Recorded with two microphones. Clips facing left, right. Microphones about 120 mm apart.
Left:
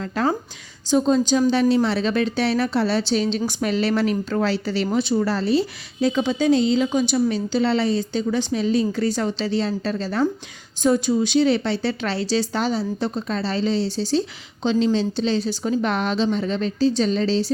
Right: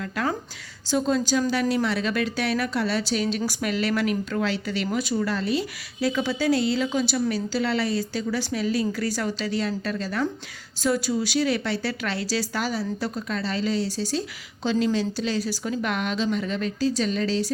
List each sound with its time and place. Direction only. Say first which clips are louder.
0.0 s a woman's voice: left 5 dB; 30° left (ahead or behind)